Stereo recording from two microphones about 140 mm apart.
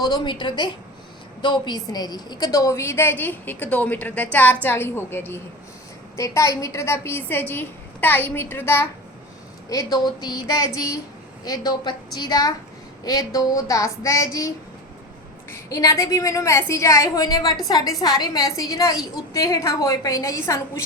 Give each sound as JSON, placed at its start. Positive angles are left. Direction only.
{"t": 0.0, "sound": "a woman's voice", "side_deg": 30}
{"t": 15.5, "sound": "a woman's voice", "side_deg": 20}